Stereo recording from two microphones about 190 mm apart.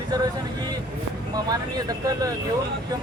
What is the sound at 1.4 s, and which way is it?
Speech, 20° right (ahead or behind).